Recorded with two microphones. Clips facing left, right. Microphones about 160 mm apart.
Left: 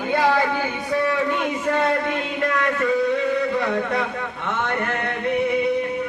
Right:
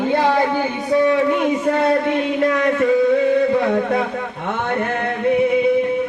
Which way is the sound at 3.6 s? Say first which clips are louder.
Right 5 dB; 40° right (ahead or behind).